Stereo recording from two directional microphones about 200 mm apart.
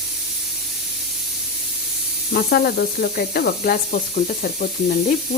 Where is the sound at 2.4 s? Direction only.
50° left (ahead or behind).